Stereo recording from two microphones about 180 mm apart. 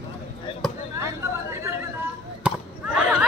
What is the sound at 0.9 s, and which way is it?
Chatter, 15° right (ahead or behind).